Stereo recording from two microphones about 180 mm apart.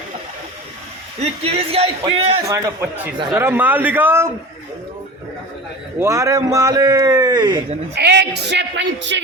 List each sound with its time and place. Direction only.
1.2 s a man's voice: 35° right (ahead or behind)
2.5 s a man's voice: 10° right (ahead or behind)
6.0 s a man's voice: 15° right (ahead or behind)
7.9 s a man's voice: 65° right (ahead or behind)